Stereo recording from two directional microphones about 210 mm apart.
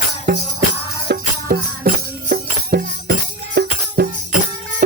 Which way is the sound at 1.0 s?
45° right (ahead or behind).